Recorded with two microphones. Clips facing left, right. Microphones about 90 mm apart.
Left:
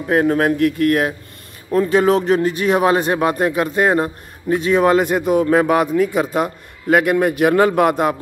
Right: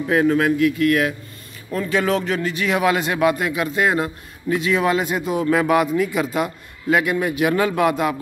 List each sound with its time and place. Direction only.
0.0 s speech: 40° left (ahead or behind)